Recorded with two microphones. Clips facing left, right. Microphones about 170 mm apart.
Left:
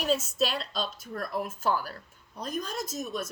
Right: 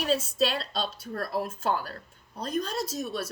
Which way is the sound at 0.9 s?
30° right (ahead or behind).